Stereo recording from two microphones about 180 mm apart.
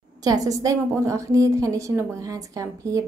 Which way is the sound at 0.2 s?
20° right (ahead or behind).